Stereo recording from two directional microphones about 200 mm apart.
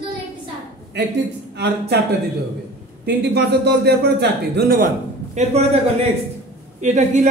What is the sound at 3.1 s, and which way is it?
Speech, 55° right (ahead or behind).